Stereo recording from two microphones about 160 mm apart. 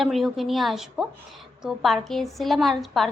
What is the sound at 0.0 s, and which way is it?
A woman's voice, centre (ahead or behind).